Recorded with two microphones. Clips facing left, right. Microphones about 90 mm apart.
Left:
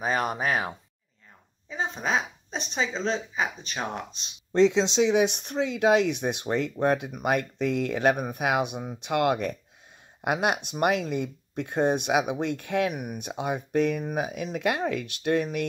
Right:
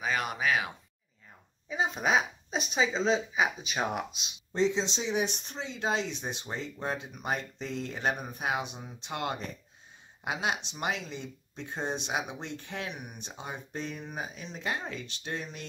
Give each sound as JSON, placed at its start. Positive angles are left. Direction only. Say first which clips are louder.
{"t": 0.0, "sound": "a sound", "louder": "left 4 dB", "side_deg": 40}
{"t": 1.7, "sound": "speech", "louder": "even", "side_deg": -5}
{"t": 4.6, "sound": "speech", "louder": "left 8 dB", "side_deg": 70}